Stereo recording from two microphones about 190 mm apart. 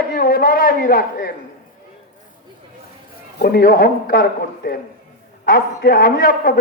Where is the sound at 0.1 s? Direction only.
50° left (ahead or behind).